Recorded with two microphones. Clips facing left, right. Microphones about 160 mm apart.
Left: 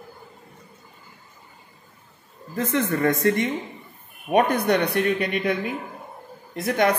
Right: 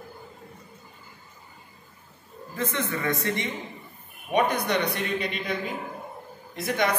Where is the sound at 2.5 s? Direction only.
45° left (ahead or behind).